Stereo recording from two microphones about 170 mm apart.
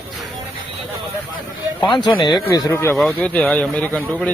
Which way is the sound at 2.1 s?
30° left (ahead or behind).